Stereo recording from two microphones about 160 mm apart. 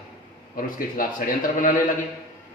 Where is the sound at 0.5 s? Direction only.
60° left (ahead or behind).